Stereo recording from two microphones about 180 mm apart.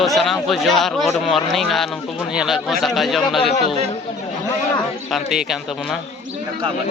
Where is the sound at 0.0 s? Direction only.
Centre (ahead or behind).